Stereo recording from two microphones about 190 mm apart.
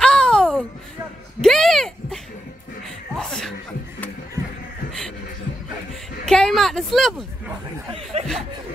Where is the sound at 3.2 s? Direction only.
5° left (ahead or behind).